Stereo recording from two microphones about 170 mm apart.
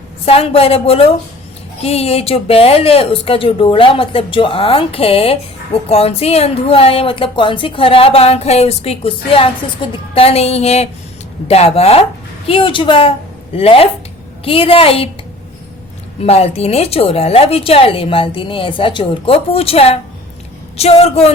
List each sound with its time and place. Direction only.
0.3 s a woman's voice: 35° left (ahead or behind)
16.2 s speech: 35° left (ahead or behind)